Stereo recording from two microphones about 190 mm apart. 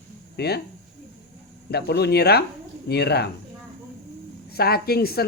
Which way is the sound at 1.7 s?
60° left (ahead or behind).